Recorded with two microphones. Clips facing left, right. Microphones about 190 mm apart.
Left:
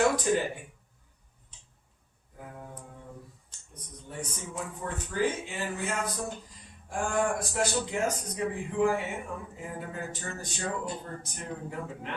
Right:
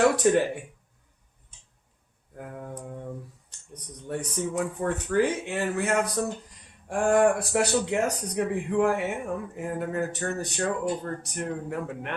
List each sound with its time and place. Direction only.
0.2 s speech: 65° right (ahead or behind)
2.4 s a sound: 60° right (ahead or behind)
4.1 s speech: 70° right (ahead or behind)